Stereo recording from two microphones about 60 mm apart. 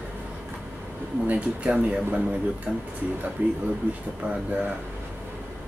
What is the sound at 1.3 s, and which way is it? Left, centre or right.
Speech, right.